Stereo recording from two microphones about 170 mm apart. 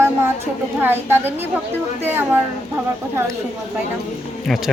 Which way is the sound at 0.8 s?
10° right (ahead or behind).